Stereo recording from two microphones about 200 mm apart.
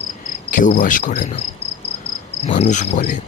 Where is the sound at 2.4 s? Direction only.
35° left (ahead or behind).